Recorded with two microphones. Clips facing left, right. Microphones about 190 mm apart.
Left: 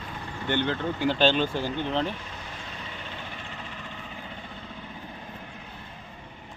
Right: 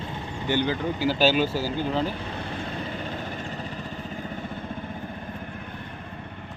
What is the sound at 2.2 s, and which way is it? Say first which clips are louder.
Vehicle: right 8 dB; 60° right (ahead or behind).